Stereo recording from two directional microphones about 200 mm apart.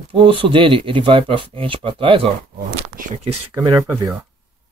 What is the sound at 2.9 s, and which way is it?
Speech, 40° right (ahead or behind).